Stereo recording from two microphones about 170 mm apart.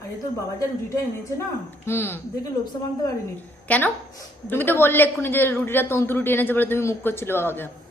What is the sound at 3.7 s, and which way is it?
A man's voice, 10° left (ahead or behind).